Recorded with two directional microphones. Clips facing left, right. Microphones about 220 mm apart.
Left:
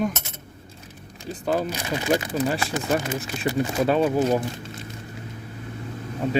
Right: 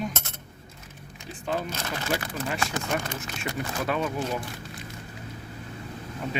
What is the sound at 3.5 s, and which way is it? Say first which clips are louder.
Speech: left 8 dB; 30° left (ahead or behind).